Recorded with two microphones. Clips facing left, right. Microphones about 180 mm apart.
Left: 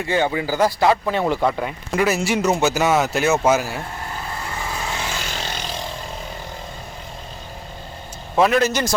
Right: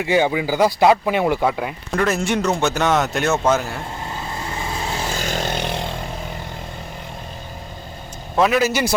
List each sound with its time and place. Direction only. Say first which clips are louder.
0.0 s speech: right 3 dB; 15° right (ahead or behind); by 3.8 s 10° left (ahead or behind)
4.9 s vehicle: right 4 dB; 40° right (ahead or behind); by 5.9 s 60° right (ahead or behind)
8.4 s speech: even; 5° right (ahead or behind)